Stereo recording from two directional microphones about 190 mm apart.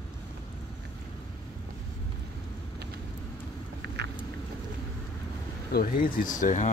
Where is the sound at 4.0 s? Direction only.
65° right (ahead or behind).